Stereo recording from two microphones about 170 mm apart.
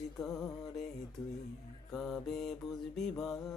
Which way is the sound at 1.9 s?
5° left (ahead or behind).